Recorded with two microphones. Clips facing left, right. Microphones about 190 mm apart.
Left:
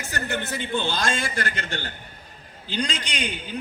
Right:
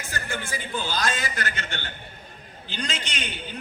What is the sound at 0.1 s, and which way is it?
Speech, 65° left (ahead or behind).